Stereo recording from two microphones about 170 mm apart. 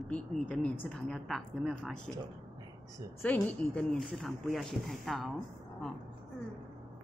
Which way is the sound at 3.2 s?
10° left (ahead or behind).